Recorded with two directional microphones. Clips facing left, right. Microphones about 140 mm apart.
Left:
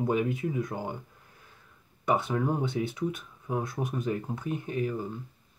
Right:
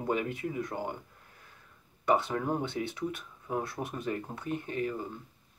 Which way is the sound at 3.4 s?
10° left (ahead or behind).